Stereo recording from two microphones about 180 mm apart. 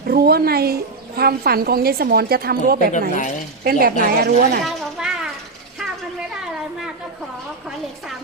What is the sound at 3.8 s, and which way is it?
Speech, 60° right (ahead or behind).